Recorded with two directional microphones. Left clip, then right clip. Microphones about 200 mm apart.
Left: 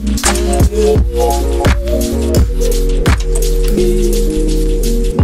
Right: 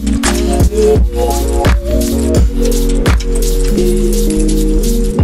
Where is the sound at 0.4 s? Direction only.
Centre (ahead or behind).